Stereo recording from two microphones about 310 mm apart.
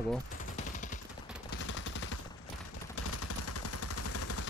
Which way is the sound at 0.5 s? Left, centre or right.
Left.